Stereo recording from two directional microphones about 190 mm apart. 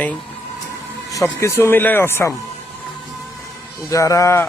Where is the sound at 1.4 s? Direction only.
10° left (ahead or behind).